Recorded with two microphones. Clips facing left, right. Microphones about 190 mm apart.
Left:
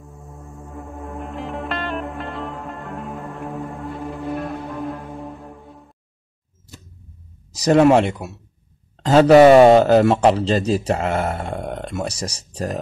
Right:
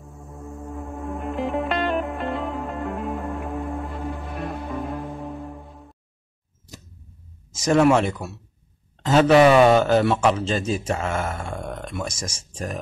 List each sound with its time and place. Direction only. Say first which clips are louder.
0.6 s music: right 1 dB; centre (ahead or behind)
7.5 s speech: left 4 dB; 35° left (ahead or behind)